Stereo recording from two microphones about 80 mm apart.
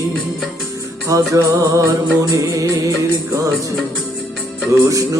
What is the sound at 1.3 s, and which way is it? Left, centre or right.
Music, right.